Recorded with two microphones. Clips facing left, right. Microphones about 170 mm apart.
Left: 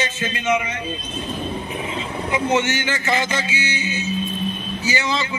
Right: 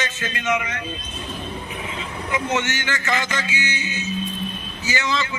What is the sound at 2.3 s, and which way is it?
A man's voice, 20° left (ahead or behind).